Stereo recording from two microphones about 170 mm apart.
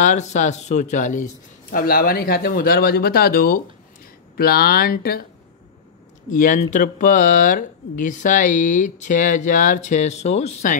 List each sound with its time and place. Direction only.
0.0 s a man's voice: 45° left (ahead or behind)
6.3 s speech: 50° left (ahead or behind)